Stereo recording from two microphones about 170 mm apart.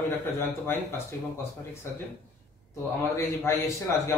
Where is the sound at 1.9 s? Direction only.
15° left (ahead or behind).